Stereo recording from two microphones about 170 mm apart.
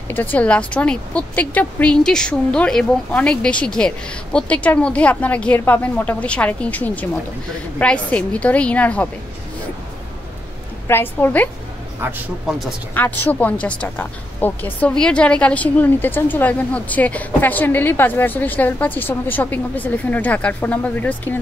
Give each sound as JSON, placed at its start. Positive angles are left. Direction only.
{"t": 0.1, "sound": "speech", "side_deg": 10}
{"t": 10.9, "sound": "speech", "side_deg": 15}
{"t": 12.0, "sound": "a man's voice", "side_deg": -15}
{"t": 12.4, "sound": "speech", "side_deg": 0}
{"t": 12.9, "sound": "speech", "side_deg": 10}